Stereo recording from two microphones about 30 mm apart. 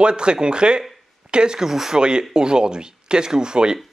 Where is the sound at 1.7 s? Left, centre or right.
Centre.